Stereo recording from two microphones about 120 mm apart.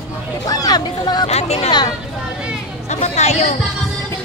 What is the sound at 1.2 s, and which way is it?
Speech, 60° left (ahead or behind).